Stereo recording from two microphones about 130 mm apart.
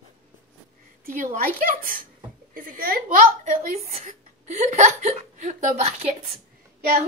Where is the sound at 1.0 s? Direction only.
90° right.